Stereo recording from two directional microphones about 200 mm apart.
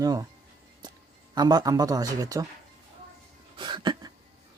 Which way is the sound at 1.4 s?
20° right (ahead or behind).